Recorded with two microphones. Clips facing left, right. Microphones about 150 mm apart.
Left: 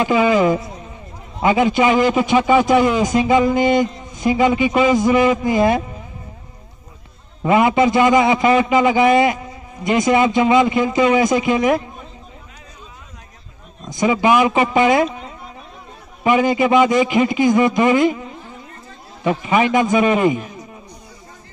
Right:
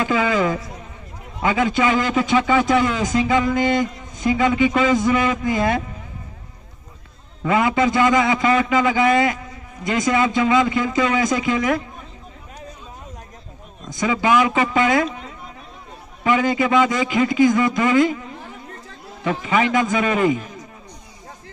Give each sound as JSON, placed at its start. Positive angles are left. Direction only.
{"t": 0.0, "sound": "a man's voice", "side_deg": 20}
{"t": 7.4, "sound": "a man's voice", "side_deg": 20}
{"t": 13.9, "sound": "a man's voice", "side_deg": 20}
{"t": 16.3, "sound": "a man's voice", "side_deg": 20}
{"t": 19.2, "sound": "a man's voice", "side_deg": 20}